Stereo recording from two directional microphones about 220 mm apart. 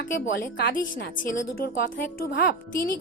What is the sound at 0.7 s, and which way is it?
A child's voice, 40° left (ahead or behind).